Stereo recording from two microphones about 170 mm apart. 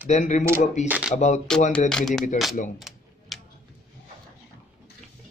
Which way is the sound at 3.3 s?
Centre (ahead or behind).